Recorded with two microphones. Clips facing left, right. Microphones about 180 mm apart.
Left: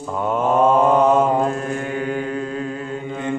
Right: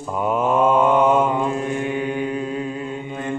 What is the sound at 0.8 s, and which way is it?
Mantra, 40° left (ahead or behind).